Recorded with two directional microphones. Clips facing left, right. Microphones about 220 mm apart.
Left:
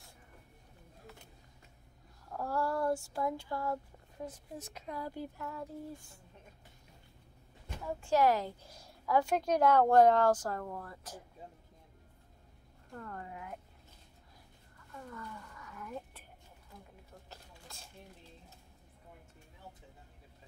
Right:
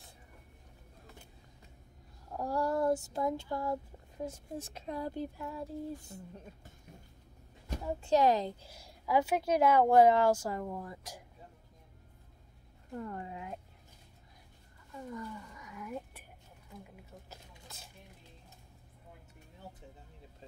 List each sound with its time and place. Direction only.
2.2 s female singing: 15° right (ahead or behind)
7.8 s female singing: 20° right (ahead or behind)
8.6 s a woman's voice: 10° right (ahead or behind)
12.9 s female singing: 15° right (ahead or behind)
14.9 s a sound: 15° right (ahead or behind)
17.3 s a sound: 5° right (ahead or behind)